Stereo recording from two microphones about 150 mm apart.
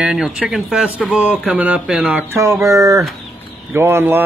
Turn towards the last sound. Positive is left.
turn(degrees=-15)  # may be behind; listen again after turning